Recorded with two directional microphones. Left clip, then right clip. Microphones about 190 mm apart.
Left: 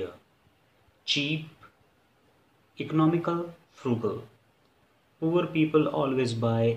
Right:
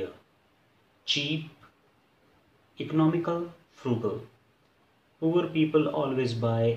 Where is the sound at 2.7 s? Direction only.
25° left (ahead or behind).